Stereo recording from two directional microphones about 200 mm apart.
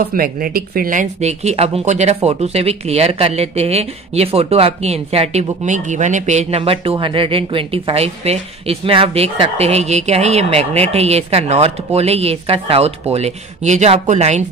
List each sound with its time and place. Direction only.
0.0 s speech: 45° right (ahead or behind)